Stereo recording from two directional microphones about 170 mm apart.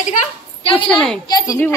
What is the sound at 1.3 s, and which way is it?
Speech, 25° left (ahead or behind).